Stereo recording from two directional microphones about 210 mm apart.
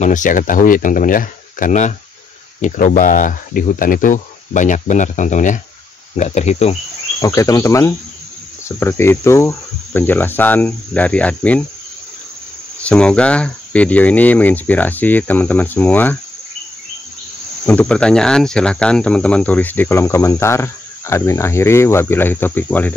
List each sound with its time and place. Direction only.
0.0 s speech: 40° left (ahead or behind)
7.2 s speech: 15° left (ahead or behind)
12.8 s speech: 5° left (ahead or behind)
17.6 s speech: 5° left (ahead or behind)